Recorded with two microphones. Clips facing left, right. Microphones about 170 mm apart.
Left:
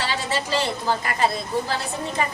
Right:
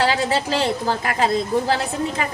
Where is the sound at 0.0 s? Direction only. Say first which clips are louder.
Right 7 dB; 90° right.